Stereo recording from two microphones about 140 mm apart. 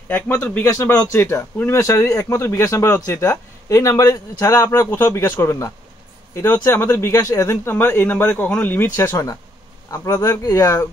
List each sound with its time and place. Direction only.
0.1 s speech: 10° left (ahead or behind)